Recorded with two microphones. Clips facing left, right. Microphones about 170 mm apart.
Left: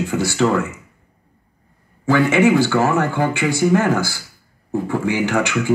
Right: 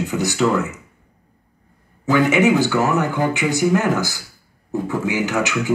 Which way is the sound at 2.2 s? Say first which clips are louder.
Left 1 dB; 15° right (ahead or behind).